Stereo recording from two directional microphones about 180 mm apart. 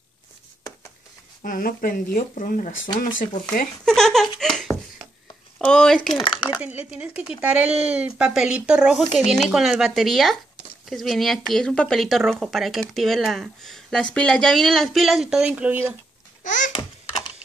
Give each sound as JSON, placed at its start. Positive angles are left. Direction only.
{"t": 1.4, "sound": "speech", "side_deg": 50}
{"t": 3.8, "sound": "a sound", "side_deg": 0}
{"t": 5.6, "sound": "speech", "side_deg": 5}
{"t": 6.1, "sound": "speech", "side_deg": 25}
{"t": 6.6, "sound": "speech", "side_deg": -10}
{"t": 16.4, "sound": "babbling", "side_deg": 45}